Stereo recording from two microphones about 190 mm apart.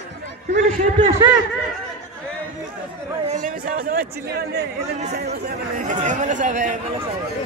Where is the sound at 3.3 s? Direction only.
45° right (ahead or behind).